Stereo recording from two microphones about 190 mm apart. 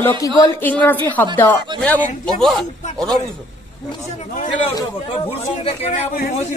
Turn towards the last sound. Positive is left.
turn(degrees=35)  # may be behind; listen again after turning